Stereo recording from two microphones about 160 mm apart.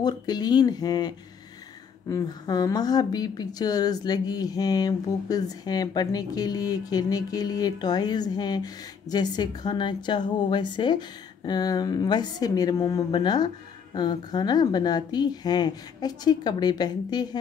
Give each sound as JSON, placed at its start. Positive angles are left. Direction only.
{"t": 0.0, "sound": "speech", "side_deg": 25}